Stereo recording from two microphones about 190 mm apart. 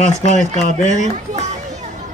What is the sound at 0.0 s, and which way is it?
Speech, 40° left (ahead or behind).